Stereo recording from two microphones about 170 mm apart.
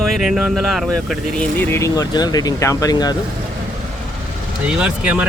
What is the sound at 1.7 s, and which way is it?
Speech, 20° left (ahead or behind).